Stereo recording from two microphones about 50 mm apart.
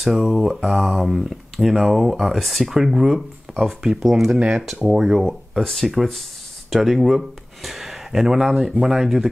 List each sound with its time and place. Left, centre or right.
0.0 s speech: centre
4.4 s speech: centre
4.8 s speech: centre
5.5 s speech: centre